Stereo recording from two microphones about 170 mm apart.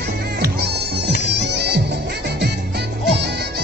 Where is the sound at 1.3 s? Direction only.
80° right.